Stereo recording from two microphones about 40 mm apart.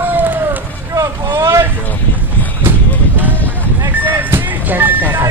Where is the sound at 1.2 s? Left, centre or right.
Right.